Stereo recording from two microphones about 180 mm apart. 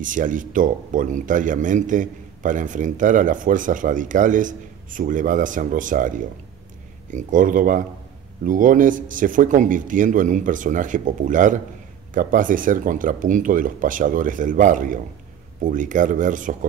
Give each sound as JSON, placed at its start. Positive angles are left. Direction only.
{"t": 0.0, "sound": "speech", "side_deg": -45}